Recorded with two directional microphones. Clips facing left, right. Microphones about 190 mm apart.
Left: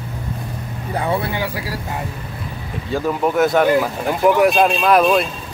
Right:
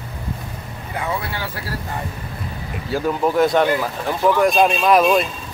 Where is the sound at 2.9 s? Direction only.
Centre (ahead or behind).